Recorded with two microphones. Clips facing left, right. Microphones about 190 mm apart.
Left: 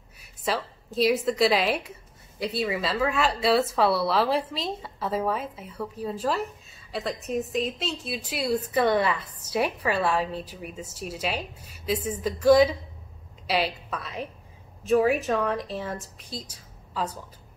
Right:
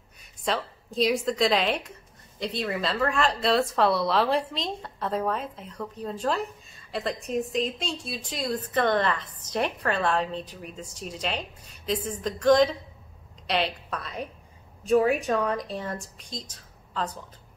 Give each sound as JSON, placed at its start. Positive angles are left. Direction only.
{"t": 0.2, "sound": "a woman's voice", "side_deg": 5}